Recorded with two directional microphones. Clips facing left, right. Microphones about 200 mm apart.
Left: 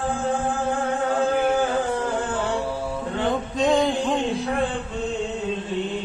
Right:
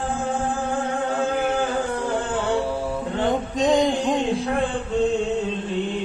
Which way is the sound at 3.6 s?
15° right (ahead or behind).